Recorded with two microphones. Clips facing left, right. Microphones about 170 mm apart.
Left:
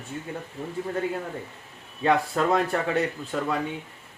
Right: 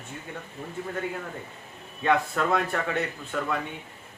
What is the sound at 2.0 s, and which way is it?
Speech, 30° left (ahead or behind).